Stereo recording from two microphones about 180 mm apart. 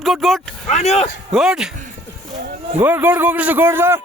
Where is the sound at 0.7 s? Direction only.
35° left (ahead or behind).